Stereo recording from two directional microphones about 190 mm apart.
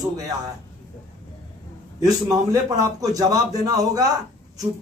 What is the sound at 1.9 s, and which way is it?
A man's voice, 20° right (ahead or behind).